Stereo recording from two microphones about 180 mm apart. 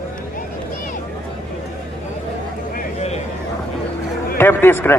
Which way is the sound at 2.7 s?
40° left (ahead or behind).